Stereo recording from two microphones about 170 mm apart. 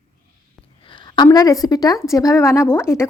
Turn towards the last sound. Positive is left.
turn(degrees=15)  # may be behind; listen again after turning